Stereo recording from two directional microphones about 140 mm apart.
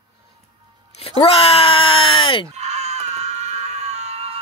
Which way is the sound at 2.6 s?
55° right (ahead or behind).